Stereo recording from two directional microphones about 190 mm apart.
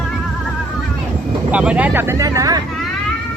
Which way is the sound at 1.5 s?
5° right (ahead or behind).